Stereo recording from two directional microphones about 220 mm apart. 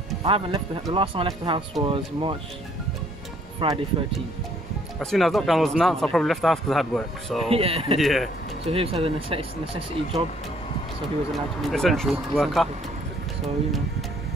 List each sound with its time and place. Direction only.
0.2 s speech: 25° right (ahead or behind)
3.5 s speech: 20° right (ahead or behind)
5.1 s a man's voice: centre (ahead or behind)
7.4 s speech: 25° right (ahead or behind)
8.0 s a man's voice: centre (ahead or behind)
8.6 s speech: 25° right (ahead or behind)
11.3 s a man's voice: centre (ahead or behind)